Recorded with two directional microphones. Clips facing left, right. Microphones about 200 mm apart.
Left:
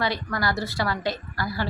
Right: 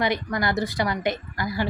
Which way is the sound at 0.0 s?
20° right (ahead or behind).